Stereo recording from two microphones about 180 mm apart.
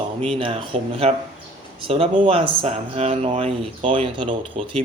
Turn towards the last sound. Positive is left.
turn(degrees=-30)  # may be behind; listen again after turning